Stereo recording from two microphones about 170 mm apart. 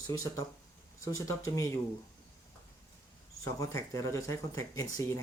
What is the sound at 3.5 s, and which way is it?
Speech, 20° left (ahead or behind).